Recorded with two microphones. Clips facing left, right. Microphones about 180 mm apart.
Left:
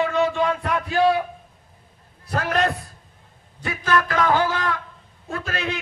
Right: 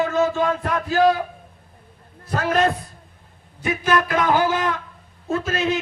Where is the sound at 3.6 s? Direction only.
20° right (ahead or behind).